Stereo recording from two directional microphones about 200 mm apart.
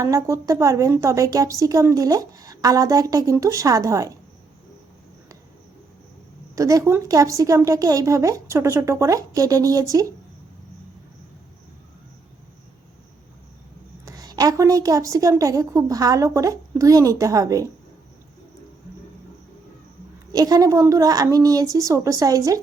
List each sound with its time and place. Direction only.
0.0 s a woman's voice: 15° right (ahead or behind)
6.6 s a woman's voice: 15° right (ahead or behind)
14.0 s a woman's voice: 15° right (ahead or behind)
20.3 s a woman's voice: 20° right (ahead or behind)